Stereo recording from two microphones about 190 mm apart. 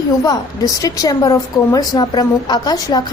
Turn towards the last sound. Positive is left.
turn(degrees=20)  # may be behind; listen again after turning